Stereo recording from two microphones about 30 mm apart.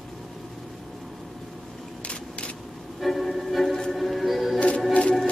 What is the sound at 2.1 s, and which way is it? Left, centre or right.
Vehicle, left.